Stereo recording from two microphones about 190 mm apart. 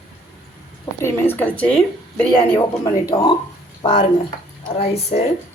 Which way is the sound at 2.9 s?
20° left (ahead or behind).